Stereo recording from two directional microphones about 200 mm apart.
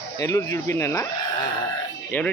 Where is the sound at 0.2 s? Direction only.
15° left (ahead or behind).